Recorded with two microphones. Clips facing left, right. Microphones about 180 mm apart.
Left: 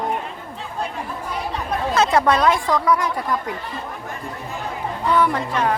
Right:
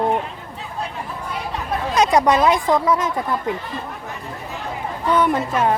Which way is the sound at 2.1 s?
15° right (ahead or behind).